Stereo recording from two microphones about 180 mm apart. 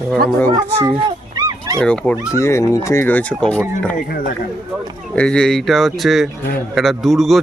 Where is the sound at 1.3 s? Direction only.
25° right (ahead or behind).